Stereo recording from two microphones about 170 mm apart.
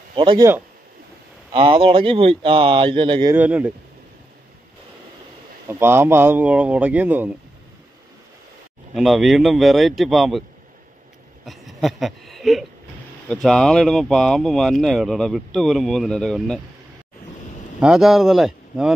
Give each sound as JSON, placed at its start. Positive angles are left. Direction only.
{"t": 0.1, "sound": "speech", "side_deg": -30}
{"t": 1.5, "sound": "speech", "side_deg": -30}
{"t": 3.3, "sound": "speech", "side_deg": -10}
{"t": 5.7, "sound": "speech", "side_deg": -15}
{"t": 8.9, "sound": "speech", "side_deg": 0}
{"t": 11.4, "sound": "speech", "side_deg": 0}
{"t": 17.7, "sound": "speech", "side_deg": -5}